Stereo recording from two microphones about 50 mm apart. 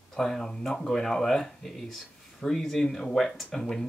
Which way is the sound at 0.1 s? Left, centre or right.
Centre.